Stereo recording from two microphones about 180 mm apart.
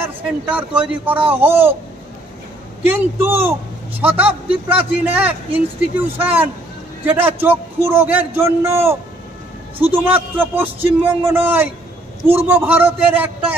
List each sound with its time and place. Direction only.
0.0 s speech: 10° right (ahead or behind)
2.8 s speech: 10° right (ahead or behind)